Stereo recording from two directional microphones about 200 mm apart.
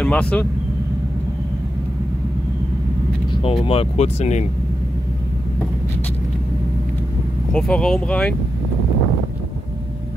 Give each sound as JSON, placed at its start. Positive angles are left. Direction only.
{"t": 0.0, "sound": "speech", "side_deg": 5}
{"t": 3.4, "sound": "speech", "side_deg": 30}
{"t": 7.5, "sound": "speech", "side_deg": 5}